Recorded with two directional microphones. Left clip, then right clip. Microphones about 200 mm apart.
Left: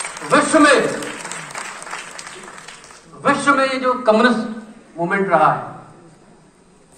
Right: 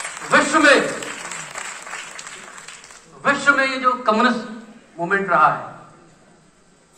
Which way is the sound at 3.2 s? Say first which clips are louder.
Left 1 dB; 35° left (ahead or behind).